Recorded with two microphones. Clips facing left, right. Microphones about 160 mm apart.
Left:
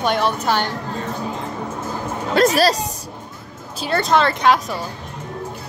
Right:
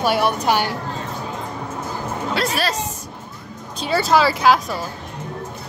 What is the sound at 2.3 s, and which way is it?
Speech, 45° left (ahead or behind).